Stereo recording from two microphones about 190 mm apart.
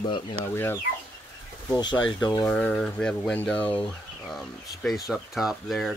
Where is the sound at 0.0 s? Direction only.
25° left (ahead or behind).